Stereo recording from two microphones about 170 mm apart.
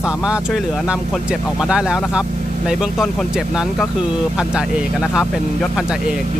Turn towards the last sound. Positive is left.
turn(degrees=0)  # may be behind; listen again after turning